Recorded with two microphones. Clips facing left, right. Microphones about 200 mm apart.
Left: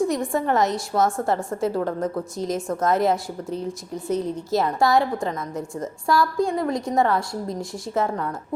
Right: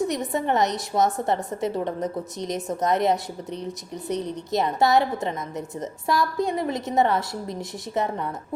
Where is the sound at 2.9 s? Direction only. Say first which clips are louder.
Left 1 dB; centre (ahead or behind).